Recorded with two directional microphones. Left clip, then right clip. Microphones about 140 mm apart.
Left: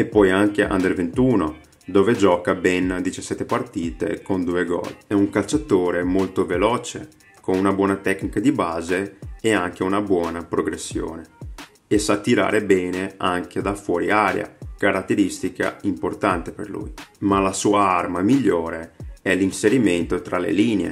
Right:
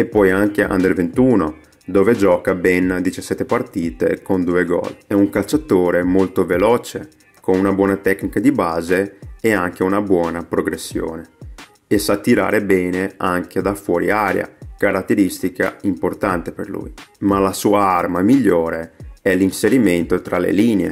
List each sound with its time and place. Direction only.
0.0 s speech: 30° right (ahead or behind)